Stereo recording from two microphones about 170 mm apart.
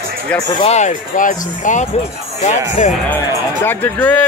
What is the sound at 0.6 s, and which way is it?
Speech, 45° left (ahead or behind).